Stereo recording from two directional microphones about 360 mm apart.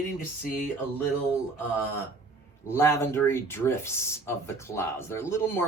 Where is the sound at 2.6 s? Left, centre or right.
Centre.